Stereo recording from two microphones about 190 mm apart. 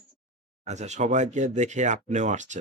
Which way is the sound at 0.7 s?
35° right (ahead or behind).